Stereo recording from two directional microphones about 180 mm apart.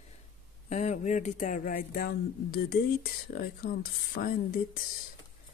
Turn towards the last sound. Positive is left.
turn(degrees=55)  # may be behind; listen again after turning